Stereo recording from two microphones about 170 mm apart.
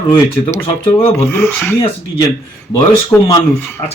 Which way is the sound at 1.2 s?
15° left (ahead or behind).